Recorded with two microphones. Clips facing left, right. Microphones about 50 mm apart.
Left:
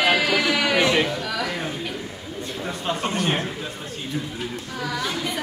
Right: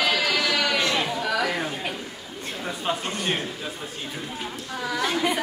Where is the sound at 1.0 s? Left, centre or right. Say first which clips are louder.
Right 1 dB; centre.